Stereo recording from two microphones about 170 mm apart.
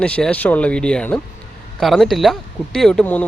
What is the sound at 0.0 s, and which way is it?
Speech, 5° left (ahead or behind).